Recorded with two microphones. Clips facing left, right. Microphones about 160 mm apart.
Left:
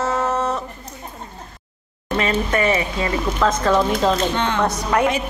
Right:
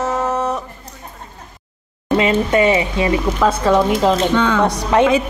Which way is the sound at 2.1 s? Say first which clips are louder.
Right 5 dB; 20° right (ahead or behind).